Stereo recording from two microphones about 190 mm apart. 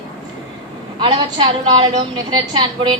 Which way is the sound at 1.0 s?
25° right (ahead or behind).